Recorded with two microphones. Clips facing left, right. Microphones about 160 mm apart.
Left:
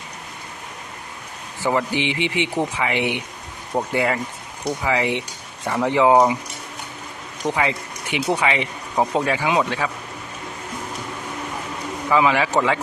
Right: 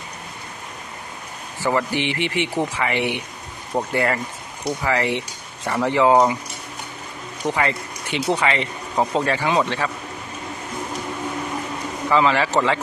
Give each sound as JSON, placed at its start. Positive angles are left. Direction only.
{"t": 1.6, "sound": "speech", "side_deg": 15}
{"t": 7.4, "sound": "speech", "side_deg": 15}
{"t": 12.0, "sound": "a man's voice", "side_deg": 10}